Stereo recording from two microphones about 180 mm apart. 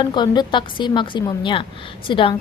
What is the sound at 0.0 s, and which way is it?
A woman's voice, 25° left (ahead or behind).